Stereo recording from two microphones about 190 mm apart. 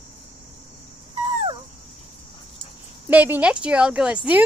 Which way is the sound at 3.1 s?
10° right (ahead or behind).